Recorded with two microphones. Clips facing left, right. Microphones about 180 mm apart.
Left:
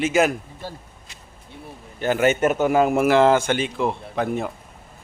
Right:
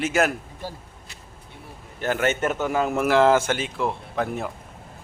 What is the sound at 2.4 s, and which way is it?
Speech, 15° left (ahead or behind).